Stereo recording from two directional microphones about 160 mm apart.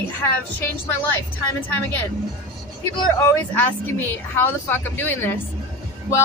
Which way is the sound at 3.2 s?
10° left (ahead or behind).